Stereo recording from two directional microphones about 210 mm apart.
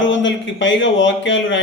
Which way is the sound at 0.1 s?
60° left (ahead or behind).